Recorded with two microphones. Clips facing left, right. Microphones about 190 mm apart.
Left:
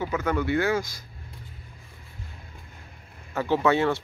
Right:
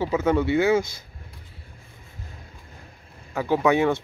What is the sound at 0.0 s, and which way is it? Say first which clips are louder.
Speech: right 5 dB; 25° right (ahead or behind).